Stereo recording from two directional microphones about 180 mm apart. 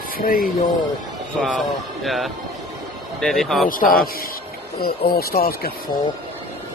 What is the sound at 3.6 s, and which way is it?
Speech, 50° left (ahead or behind).